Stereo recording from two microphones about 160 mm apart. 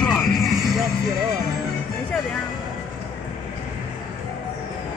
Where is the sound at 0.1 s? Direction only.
Centre (ahead or behind).